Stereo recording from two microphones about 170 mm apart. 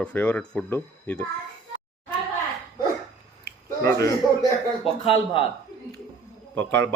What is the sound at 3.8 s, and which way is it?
Speech, 20° left (ahead or behind).